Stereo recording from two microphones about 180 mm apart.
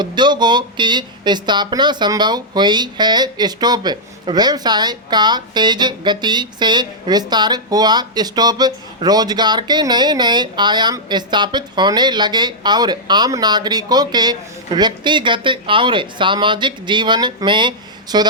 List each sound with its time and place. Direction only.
0.0 s speech: 25° right (ahead or behind)